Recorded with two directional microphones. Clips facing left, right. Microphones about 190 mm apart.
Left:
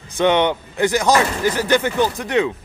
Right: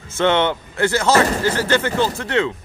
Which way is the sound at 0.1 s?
15° left (ahead or behind).